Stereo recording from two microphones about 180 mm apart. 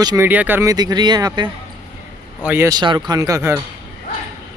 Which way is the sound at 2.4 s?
10° right (ahead or behind).